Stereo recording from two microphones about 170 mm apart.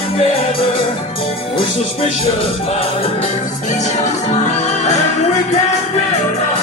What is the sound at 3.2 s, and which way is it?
Music, 45° left (ahead or behind).